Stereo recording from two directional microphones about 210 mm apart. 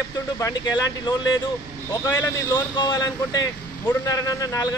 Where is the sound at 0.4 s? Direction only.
20° left (ahead or behind).